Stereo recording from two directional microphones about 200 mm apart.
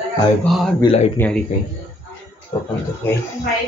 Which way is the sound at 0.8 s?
25° left (ahead or behind).